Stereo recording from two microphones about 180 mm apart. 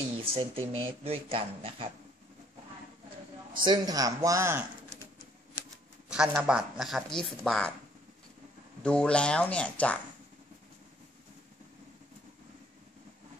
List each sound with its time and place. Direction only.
0.1 s speech: 35° right (ahead or behind)
3.5 s speech: 25° right (ahead or behind)
6.0 s speech: 5° right (ahead or behind)
8.8 s speech: 5° left (ahead or behind)